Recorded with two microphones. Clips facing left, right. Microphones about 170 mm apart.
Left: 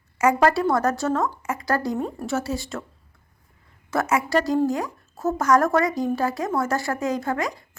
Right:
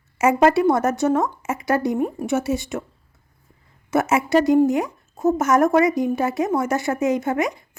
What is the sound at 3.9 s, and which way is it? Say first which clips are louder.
Speech: right 4 dB; 25° right (ahead or behind).